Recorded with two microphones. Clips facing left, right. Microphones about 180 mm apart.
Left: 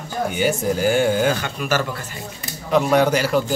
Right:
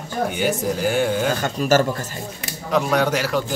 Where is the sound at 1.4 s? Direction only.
45° right (ahead or behind).